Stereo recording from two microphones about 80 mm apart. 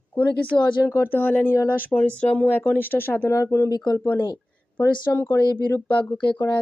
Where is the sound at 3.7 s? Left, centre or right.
Left.